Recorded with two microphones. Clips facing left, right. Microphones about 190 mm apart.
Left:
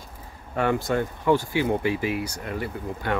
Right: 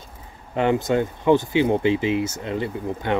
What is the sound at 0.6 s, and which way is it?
Speech, 20° right (ahead or behind).